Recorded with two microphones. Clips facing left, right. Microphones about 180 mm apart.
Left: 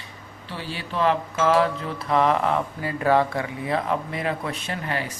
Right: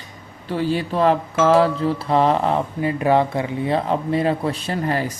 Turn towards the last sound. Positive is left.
turn(degrees=-40)  # may be behind; listen again after turning